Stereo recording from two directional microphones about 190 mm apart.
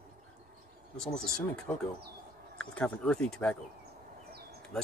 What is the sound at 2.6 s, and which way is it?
Speech, 5° left (ahead or behind).